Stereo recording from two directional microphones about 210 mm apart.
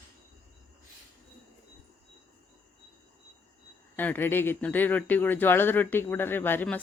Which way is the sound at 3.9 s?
10° left (ahead or behind).